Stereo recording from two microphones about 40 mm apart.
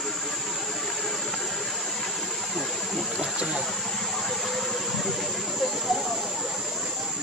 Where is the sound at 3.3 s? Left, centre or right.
Right.